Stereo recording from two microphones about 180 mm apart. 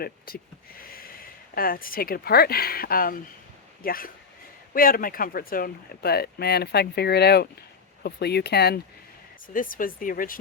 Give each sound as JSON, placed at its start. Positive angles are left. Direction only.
{"t": 0.3, "sound": "speech", "side_deg": 55}
{"t": 9.5, "sound": "speech", "side_deg": 50}